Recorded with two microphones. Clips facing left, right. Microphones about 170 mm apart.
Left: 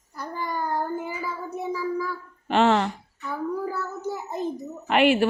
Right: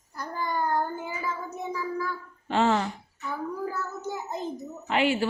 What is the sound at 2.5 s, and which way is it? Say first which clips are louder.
Speech: left 4 dB; 70° left (ahead or behind).